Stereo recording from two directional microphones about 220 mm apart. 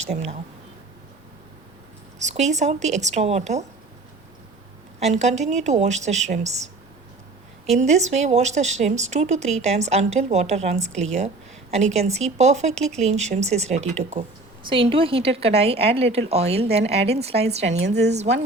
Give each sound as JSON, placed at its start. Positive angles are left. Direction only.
{"t": 0.0, "sound": "speech", "side_deg": -30}
{"t": 2.1, "sound": "speech", "side_deg": -30}
{"t": 4.9, "sound": "speech", "side_deg": -30}
{"t": 7.8, "sound": "speech", "side_deg": -30}
{"t": 17.8, "sound": "a woman's voice", "side_deg": -50}
{"t": 18.1, "sound": "speech", "side_deg": -30}